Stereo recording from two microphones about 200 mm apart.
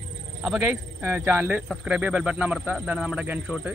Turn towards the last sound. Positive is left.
turn(degrees=-5)  # may be behind; listen again after turning